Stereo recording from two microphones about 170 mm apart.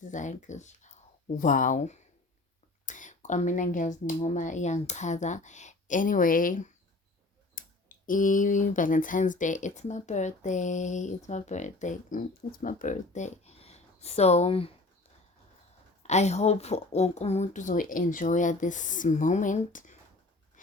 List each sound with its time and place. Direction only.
0.0 s speech: 45° left (ahead or behind)
16.0 s speech: 40° left (ahead or behind)